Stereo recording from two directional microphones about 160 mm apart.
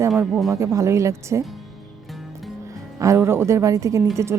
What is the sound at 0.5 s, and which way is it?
Speech, 20° right (ahead or behind).